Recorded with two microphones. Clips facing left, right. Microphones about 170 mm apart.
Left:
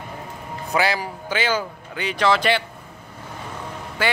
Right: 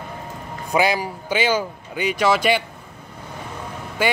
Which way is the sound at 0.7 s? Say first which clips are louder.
Right 3 dB; 15° right (ahead or behind).